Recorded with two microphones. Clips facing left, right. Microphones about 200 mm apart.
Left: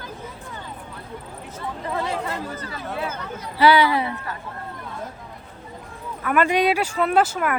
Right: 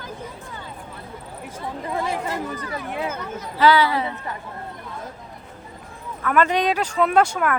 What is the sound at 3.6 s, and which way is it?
Speech, 15° left (ahead or behind).